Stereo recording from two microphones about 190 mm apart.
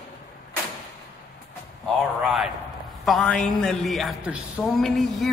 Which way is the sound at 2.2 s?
Centre (ahead or behind).